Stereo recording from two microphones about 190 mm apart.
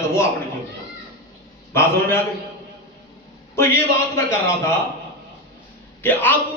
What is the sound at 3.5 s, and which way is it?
A man's voice, 15° left (ahead or behind).